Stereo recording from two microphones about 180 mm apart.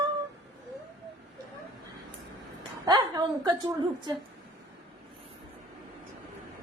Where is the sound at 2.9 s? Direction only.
20° right (ahead or behind).